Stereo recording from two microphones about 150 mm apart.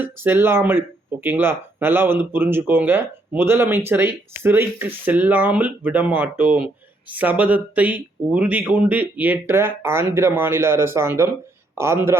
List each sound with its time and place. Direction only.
0.0 s speech: 15° right (ahead or behind)